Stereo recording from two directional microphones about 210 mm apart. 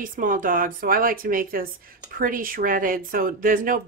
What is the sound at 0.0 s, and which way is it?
Speech, 40° right (ahead or behind).